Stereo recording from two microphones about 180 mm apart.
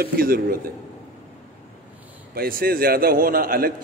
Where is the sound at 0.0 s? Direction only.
55° right (ahead or behind).